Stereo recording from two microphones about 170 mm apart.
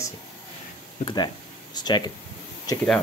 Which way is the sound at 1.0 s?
25° left (ahead or behind).